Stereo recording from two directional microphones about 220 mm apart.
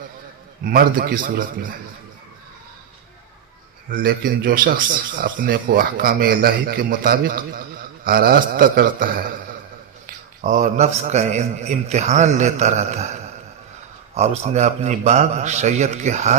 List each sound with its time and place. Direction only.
0.6 s speech: 40° right (ahead or behind)
3.9 s speech: 40° right (ahead or behind)
10.4 s speech: 35° right (ahead or behind)
14.2 s speech: 30° right (ahead or behind)